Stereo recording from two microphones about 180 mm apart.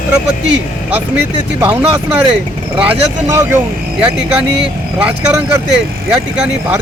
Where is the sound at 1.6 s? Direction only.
10° right (ahead or behind).